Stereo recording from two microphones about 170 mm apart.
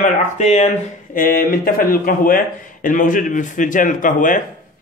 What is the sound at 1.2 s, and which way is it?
A man's voice, 55° left (ahead or behind).